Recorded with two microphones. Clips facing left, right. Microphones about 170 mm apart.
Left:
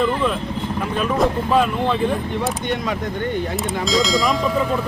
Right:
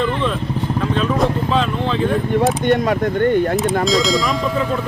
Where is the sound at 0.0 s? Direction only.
5° left (ahead or behind).